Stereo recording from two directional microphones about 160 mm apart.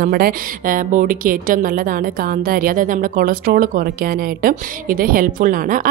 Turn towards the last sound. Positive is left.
turn(degrees=-60)  # may be behind; listen again after turning